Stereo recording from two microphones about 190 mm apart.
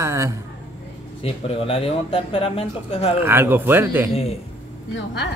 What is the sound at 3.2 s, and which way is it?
Speech, 10° right (ahead or behind).